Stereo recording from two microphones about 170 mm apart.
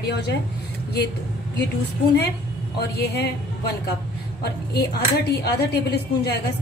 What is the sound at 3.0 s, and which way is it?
Speech, 75° left (ahead or behind).